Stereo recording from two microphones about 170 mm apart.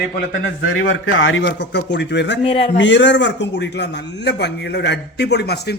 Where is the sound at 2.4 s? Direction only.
35° left (ahead or behind).